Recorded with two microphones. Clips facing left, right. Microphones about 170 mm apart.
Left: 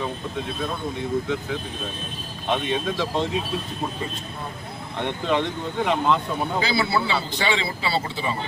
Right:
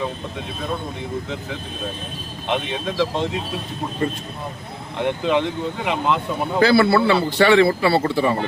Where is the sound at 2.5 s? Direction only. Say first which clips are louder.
Even; centre (ahead or behind).